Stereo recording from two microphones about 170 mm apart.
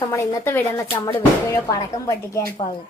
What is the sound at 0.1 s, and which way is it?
A child's voice, 15° left (ahead or behind).